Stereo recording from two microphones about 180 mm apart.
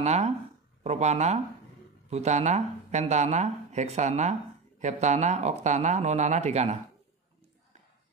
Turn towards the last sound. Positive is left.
turn(degrees=-40)  # may be behind; listen again after turning